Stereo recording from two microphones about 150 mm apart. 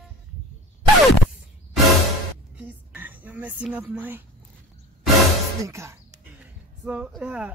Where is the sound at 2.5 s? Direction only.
10° right (ahead or behind).